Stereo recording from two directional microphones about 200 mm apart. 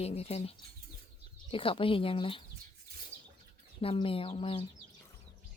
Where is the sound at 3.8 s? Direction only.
25° left (ahead or behind).